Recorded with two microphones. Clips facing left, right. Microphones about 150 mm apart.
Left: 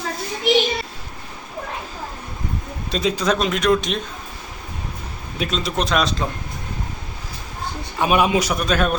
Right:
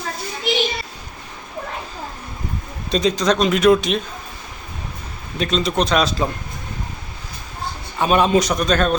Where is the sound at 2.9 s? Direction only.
5° left (ahead or behind).